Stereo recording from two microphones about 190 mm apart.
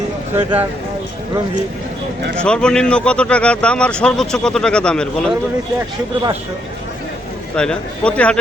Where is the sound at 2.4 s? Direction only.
5° left (ahead or behind).